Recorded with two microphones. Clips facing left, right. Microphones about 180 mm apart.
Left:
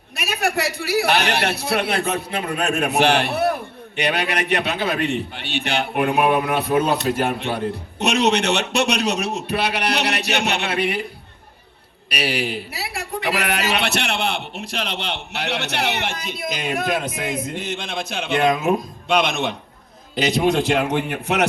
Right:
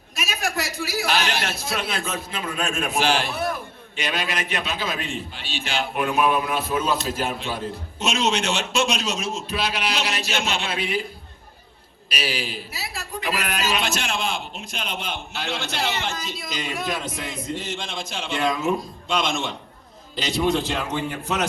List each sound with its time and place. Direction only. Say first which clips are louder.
0.2 s a man's voice: left 5 dB; 60° left (ahead or behind)
12.0 s a man's voice: left 5 dB; 65° left (ahead or behind)